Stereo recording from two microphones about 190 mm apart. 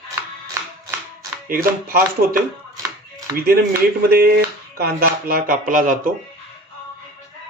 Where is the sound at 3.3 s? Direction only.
50° right (ahead or behind).